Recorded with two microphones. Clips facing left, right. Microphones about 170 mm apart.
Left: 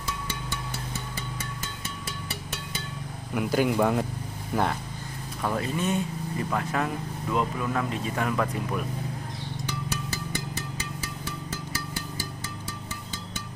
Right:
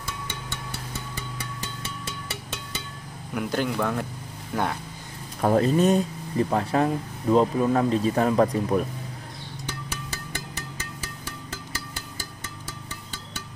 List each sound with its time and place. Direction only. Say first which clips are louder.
3.3 s speech: left 1 dB; 5° left (ahead or behind)
3.7 s speech: left 3 dB; 15° left (ahead or behind)
4.5 s speech: left 1 dB; 5° left (ahead or behind)
5.4 s speech: right 9 dB; 40° right (ahead or behind)